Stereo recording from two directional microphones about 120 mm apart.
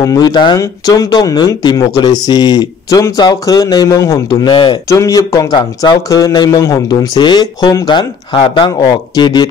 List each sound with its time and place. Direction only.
0.0 s speech: 30° left (ahead or behind)
0.6 s speech: 30° left (ahead or behind)
4.8 s speech: 30° left (ahead or behind)